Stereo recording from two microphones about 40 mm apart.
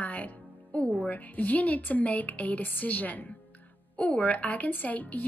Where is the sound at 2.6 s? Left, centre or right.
Left.